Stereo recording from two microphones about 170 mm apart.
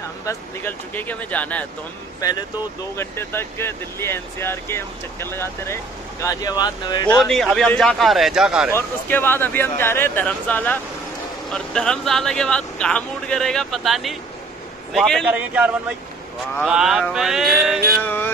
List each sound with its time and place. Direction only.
0.2 s speech: 15° left (ahead or behind)
2.2 s speech: 20° left (ahead or behind)
7.2 s speech: centre (ahead or behind)
8.7 s a man's voice: 10° left (ahead or behind)
18.0 s music: 10° left (ahead or behind)